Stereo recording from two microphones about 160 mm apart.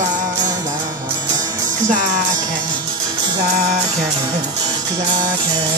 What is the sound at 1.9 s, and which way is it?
Music, 55° right (ahead or behind).